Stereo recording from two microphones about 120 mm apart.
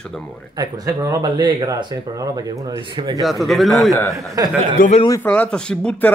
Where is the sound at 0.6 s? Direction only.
30° right (ahead or behind).